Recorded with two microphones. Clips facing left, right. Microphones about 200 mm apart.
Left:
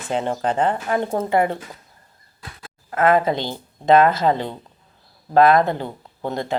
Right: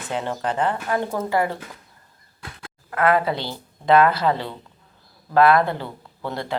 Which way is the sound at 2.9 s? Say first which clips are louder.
Left 3 dB; 20° left (ahead or behind).